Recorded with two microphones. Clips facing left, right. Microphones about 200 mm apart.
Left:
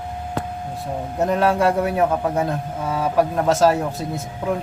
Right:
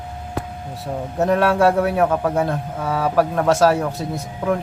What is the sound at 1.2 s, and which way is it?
Speech, centre (ahead or behind).